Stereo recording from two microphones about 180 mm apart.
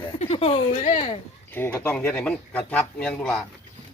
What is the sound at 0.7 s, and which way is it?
Speech, 50° left (ahead or behind).